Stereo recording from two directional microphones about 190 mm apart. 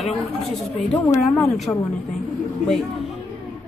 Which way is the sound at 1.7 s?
15° left (ahead or behind).